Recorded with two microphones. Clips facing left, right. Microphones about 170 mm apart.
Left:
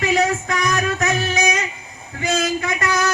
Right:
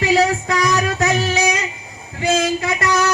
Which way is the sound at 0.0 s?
30° right (ahead or behind).